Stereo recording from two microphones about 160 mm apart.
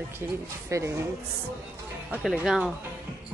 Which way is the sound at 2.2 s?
Centre (ahead or behind).